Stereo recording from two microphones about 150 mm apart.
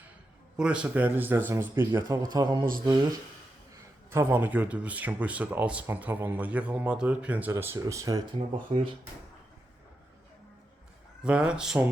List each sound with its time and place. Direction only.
0.5 s speech: 5° right (ahead or behind)
2.3 s a man's voice: 30° right (ahead or behind)
4.1 s speech: 15° right (ahead or behind)
11.2 s speech: 5° right (ahead or behind)